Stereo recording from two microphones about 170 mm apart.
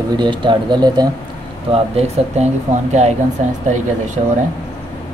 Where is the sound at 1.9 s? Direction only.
40° right (ahead or behind).